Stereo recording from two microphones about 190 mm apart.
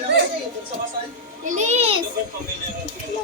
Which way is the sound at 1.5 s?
40° right (ahead or behind).